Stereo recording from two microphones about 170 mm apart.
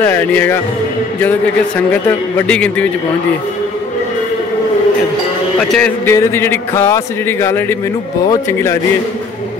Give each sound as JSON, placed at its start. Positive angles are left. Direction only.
{"t": 0.0, "sound": "speech", "side_deg": 10}
{"t": 1.9, "sound": "speech", "side_deg": 10}
{"t": 5.6, "sound": "speech", "side_deg": 5}